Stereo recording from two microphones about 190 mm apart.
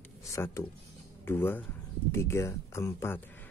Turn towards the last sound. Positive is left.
turn(degrees=15)  # may be behind; listen again after turning